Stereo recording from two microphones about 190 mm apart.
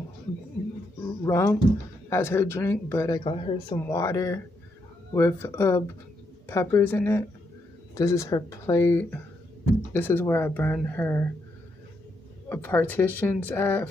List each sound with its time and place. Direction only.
1.2 s speech: 15° left (ahead or behind)
12.4 s speech: 10° left (ahead or behind)